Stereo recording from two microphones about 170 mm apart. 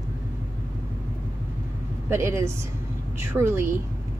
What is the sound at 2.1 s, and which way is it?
A woman's voice, 15° right (ahead or behind).